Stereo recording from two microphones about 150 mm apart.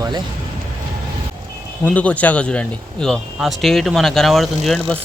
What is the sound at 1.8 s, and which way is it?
Speech, 10° left (ahead or behind).